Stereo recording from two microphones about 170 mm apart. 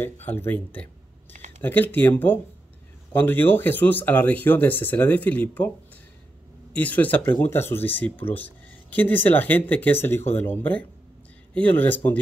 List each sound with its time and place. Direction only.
0.0 s speech: 10° left (ahead or behind)
6.7 s speech: 10° left (ahead or behind)